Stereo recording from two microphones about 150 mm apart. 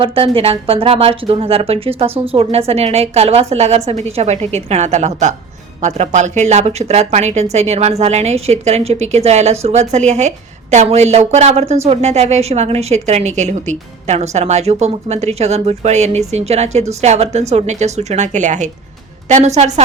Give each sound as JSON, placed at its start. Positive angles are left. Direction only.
{"t": 0.0, "sound": "a woman's voice", "side_deg": -35}